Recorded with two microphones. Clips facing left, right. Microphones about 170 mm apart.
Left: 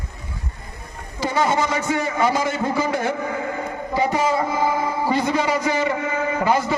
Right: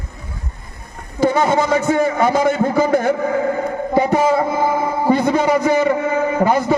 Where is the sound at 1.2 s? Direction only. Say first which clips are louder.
Right 5 dB; 55° right (ahead or behind).